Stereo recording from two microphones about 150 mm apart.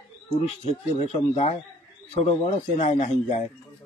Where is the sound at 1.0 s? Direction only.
45° left (ahead or behind).